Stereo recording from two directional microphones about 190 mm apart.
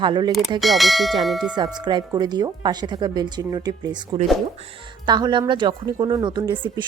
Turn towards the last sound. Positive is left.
turn(degrees=-25)  # may be behind; listen again after turning